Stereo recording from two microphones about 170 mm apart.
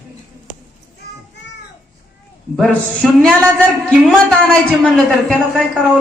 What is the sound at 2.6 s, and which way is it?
A man's voice, 5° left (ahead or behind).